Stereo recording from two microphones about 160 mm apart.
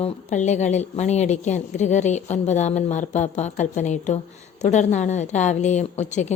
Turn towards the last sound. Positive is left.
turn(degrees=45)  # may be behind; listen again after turning